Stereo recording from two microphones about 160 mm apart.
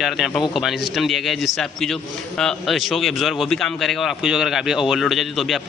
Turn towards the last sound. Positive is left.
turn(degrees=0)  # may be behind; listen again after turning